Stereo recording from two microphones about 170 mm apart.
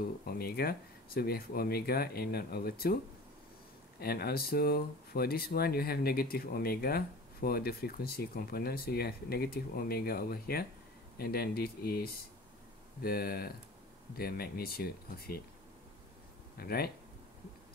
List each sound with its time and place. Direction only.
0.2 s speech: 60° left (ahead or behind)
4.0 s speech: 65° left (ahead or behind)
16.5 s speech: 60° left (ahead or behind)